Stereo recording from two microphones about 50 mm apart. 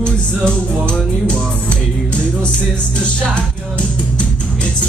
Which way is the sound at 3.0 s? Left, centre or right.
Left.